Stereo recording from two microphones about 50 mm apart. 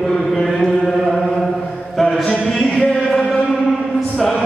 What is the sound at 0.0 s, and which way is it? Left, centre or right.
Chant, centre.